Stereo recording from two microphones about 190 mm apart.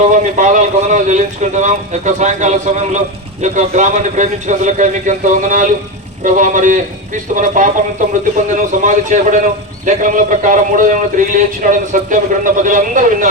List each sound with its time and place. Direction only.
0.0 s a man's voice: 40° right (ahead or behind)